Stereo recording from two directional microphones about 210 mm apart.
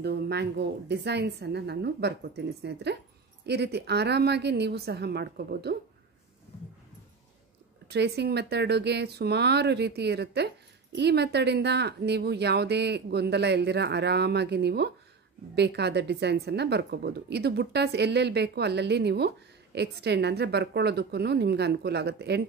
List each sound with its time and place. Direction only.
0.0 s speech: 50° right (ahead or behind)
7.9 s speech: 55° right (ahead or behind)